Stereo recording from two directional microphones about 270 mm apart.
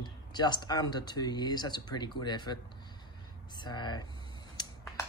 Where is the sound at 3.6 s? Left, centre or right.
Centre.